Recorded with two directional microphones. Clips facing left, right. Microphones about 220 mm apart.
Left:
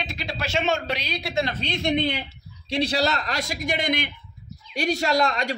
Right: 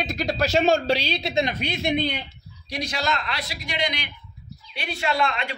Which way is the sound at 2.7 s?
30° left (ahead or behind).